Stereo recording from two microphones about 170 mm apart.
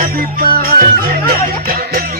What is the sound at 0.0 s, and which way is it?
Music, 55° right (ahead or behind).